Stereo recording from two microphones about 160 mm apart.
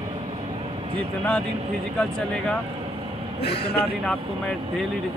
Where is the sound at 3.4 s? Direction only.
90° left.